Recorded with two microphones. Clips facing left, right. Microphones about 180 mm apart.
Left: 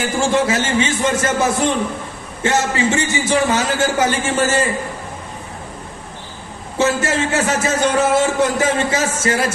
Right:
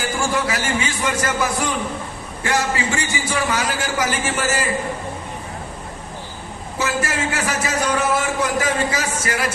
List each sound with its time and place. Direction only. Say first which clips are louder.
0.0 s speech: left 5 dB; 25° left (ahead or behind)
6.7 s speech: left 6 dB; 25° left (ahead or behind)